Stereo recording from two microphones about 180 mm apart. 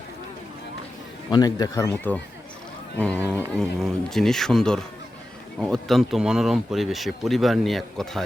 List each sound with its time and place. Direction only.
1.3 s speech: 20° left (ahead or behind); by 8.2 s centre (ahead or behind)